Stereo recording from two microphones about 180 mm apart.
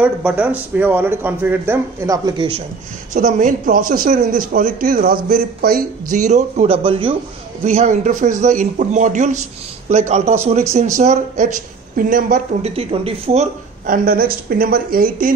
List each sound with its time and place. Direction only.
0.0 s a man's voice: 5° right (ahead or behind)
3.1 s a man's voice: 45° right (ahead or behind)
6.1 s a man's voice: 40° right (ahead or behind)
7.6 s a man's voice: 40° right (ahead or behind)
12.6 s a man's voice: 35° right (ahead or behind); by 15.3 s 50° right (ahead or behind)